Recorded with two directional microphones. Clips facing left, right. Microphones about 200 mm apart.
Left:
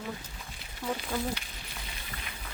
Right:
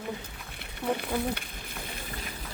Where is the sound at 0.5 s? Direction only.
60° right (ahead or behind).